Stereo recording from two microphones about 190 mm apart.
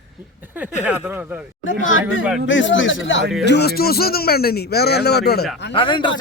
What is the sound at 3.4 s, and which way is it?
A man's voice, 60° left (ahead or behind).